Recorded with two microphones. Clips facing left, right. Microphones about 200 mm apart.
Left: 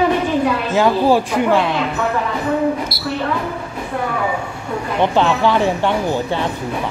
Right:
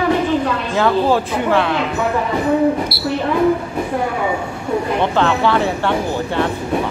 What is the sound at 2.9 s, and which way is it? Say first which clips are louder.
Speech: right 5 dB; 45° left (ahead or behind).